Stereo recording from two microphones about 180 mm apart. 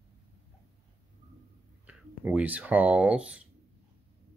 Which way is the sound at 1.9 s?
10° right (ahead or behind).